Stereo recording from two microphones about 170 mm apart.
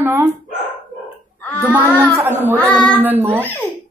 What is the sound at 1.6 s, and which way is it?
Speech, 10° right (ahead or behind).